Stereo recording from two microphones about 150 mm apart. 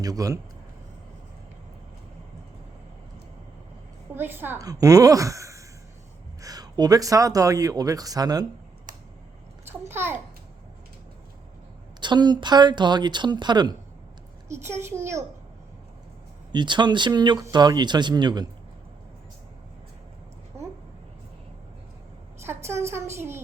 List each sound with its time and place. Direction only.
0.0 s speech: 25° right (ahead or behind)
4.1 s a woman's voice: 15° right (ahead or behind)
9.6 s a child's voice: 15° right (ahead or behind)
11.9 s speech: 30° right (ahead or behind)
14.6 s a child's voice: 15° right (ahead or behind)
16.5 s speech: 30° right (ahead or behind)
22.4 s a woman's voice: 15° right (ahead or behind)